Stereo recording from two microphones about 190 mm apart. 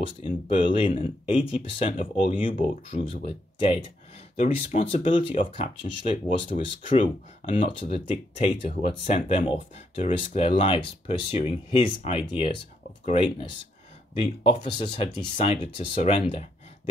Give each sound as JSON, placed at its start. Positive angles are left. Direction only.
{"t": 0.5, "sound": "speech", "side_deg": 25}